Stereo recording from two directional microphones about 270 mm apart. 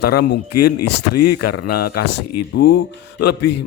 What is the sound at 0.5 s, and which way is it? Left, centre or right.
Speech, left.